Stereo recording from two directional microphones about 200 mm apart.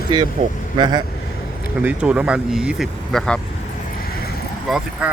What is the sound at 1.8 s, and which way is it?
Speech, 5° right (ahead or behind).